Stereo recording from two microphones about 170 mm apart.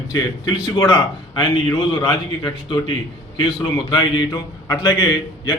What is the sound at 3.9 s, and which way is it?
A man's voice, 25° left (ahead or behind).